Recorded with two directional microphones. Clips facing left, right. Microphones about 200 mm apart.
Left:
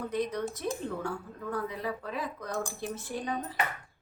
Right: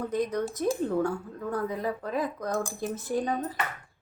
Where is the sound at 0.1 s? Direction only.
45° right (ahead or behind).